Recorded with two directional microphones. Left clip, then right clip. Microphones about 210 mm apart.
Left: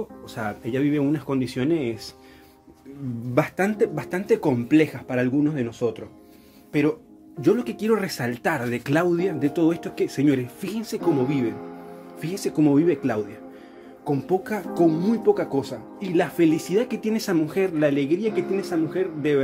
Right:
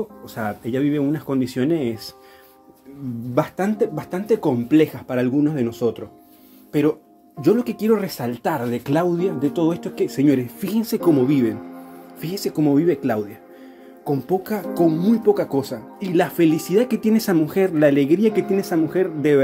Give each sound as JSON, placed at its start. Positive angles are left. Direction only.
{"t": 0.3, "sound": "speech", "side_deg": -10}
{"t": 3.3, "sound": "speech", "side_deg": 10}
{"t": 12.2, "sound": "speech", "side_deg": 0}